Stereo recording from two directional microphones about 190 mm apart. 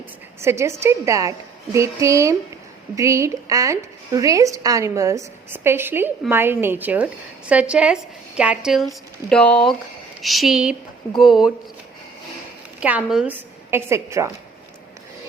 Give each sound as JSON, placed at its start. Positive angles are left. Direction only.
{"t": 0.4, "sound": "a woman's voice", "side_deg": -15}
{"t": 12.8, "sound": "a woman's voice", "side_deg": -5}